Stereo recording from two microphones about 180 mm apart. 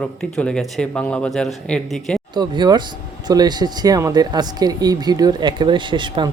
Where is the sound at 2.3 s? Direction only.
25° right (ahead or behind).